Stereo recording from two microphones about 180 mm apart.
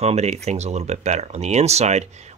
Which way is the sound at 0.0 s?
35° right (ahead or behind).